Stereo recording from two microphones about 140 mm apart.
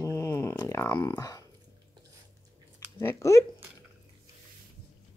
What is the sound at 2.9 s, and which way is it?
Speech, 20° left (ahead or behind).